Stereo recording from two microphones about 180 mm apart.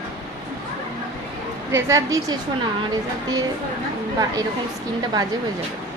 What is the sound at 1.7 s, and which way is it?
Speech, 15° right (ahead or behind).